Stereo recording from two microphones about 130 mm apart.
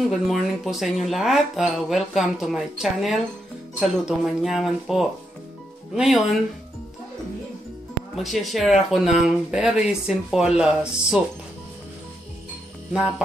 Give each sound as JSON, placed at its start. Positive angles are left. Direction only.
{"t": 0.1, "sound": "speech", "side_deg": 0}
{"t": 8.2, "sound": "speech", "side_deg": 0}